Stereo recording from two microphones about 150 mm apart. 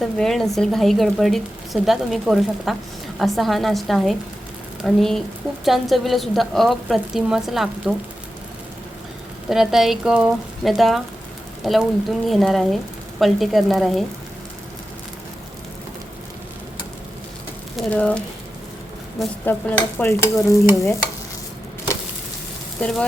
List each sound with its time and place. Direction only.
0.0 s speech: centre (ahead or behind)
9.5 s speech: centre (ahead or behind)
17.7 s speech: 10° left (ahead or behind)
19.5 s stir: 10° left (ahead or behind)
22.8 s stir: 5° left (ahead or behind)